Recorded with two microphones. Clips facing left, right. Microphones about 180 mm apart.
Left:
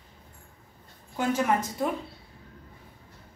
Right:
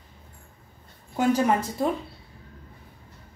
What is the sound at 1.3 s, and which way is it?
Speech, 30° right (ahead or behind).